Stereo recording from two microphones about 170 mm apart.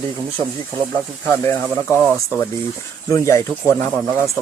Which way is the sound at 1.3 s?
15° left (ahead or behind).